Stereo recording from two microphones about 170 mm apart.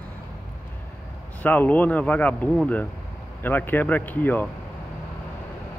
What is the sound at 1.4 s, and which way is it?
Speech, 10° left (ahead or behind).